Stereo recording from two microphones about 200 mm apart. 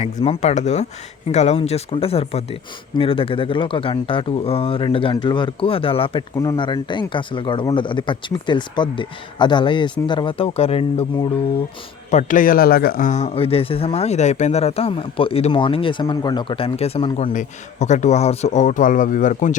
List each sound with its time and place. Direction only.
0.3 s speech: 35° left (ahead or behind)
12.1 s speech: 40° left (ahead or behind)